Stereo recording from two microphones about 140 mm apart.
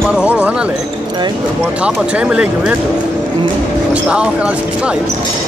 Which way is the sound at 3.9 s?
10° right (ahead or behind).